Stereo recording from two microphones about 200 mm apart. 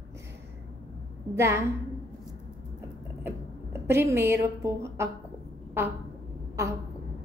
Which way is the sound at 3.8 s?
15° right (ahead or behind).